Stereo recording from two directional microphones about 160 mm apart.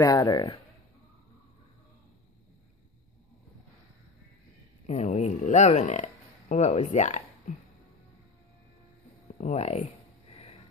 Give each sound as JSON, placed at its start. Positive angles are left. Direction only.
{"t": 0.0, "sound": "speech", "side_deg": 20}
{"t": 4.8, "sound": "speech", "side_deg": 45}
{"t": 9.4, "sound": "speech", "side_deg": 45}